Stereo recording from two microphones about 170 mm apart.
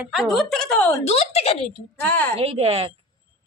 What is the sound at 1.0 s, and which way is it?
Speech, 40° left (ahead or behind).